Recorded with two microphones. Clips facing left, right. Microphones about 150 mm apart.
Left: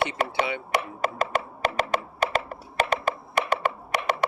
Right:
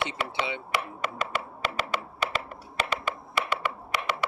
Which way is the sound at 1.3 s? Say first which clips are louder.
Left 5 dB; 45° left (ahead or behind).